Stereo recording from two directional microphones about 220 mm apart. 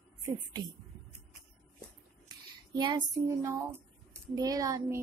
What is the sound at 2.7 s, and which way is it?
A woman's voice, 20° right (ahead or behind).